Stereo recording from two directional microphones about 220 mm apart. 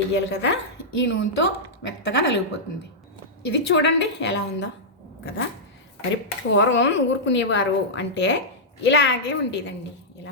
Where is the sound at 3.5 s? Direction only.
50° left (ahead or behind).